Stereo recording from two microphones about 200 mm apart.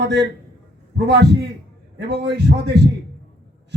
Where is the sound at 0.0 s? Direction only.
60° right (ahead or behind).